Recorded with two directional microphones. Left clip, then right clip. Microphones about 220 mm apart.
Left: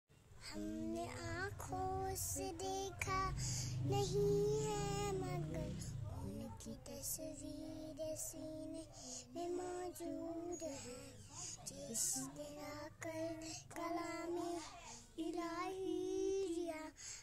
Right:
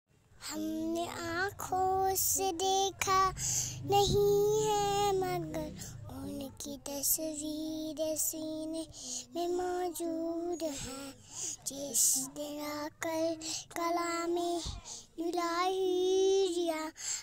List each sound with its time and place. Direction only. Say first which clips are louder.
0.5 s a child's voice: right 10 dB; 35° right (ahead or behind)
15.3 s child singing: right 14 dB; 40° right (ahead or behind)